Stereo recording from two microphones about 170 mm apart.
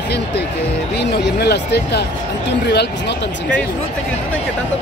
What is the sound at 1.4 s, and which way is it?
Speech, 75° left (ahead or behind).